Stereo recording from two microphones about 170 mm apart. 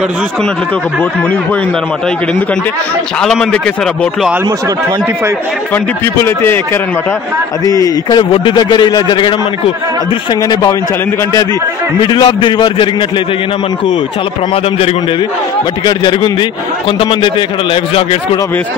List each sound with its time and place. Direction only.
3.2 s a man's voice: 5° left (ahead or behind)
6.1 s speech: 15° left (ahead or behind)
7.6 s a man's voice: 20° left (ahead or behind)
10.5 s a man's voice: 25° left (ahead or behind)
12.1 s a man's voice: 25° left (ahead or behind)
15.8 s a man's voice: 25° left (ahead or behind)